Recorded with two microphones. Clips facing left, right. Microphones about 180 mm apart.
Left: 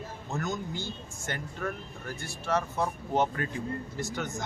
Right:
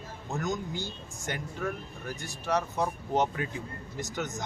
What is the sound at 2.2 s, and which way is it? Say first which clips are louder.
A man's voice: even; 15° right (ahead or behind).